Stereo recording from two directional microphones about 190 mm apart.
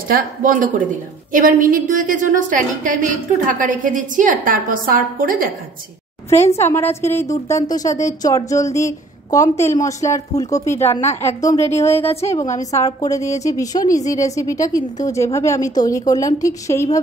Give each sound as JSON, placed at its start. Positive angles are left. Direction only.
{"t": 0.1, "sound": "a woman's voice", "side_deg": -45}
{"t": 6.6, "sound": "a woman's voice", "side_deg": 15}
{"t": 12.0, "sound": "a woman's voice", "side_deg": 30}
{"t": 12.5, "sound": "a woman's voice", "side_deg": 20}